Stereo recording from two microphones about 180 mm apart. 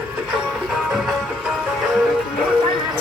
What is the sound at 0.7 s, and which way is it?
Music, centre (ahead or behind).